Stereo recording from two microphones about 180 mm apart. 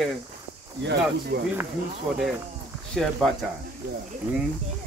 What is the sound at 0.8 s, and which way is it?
Speech, 70° right (ahead or behind).